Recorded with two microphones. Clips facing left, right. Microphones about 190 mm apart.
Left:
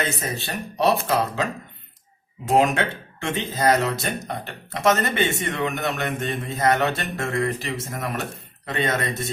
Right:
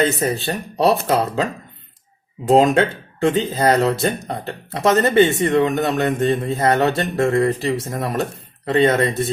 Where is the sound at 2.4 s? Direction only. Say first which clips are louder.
Right 5 dB; 35° right (ahead or behind).